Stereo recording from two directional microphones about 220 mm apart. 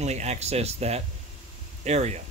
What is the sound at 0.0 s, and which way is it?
Speech, 30° right (ahead or behind).